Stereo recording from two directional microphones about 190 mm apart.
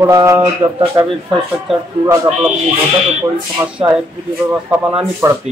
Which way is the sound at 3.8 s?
20° right (ahead or behind).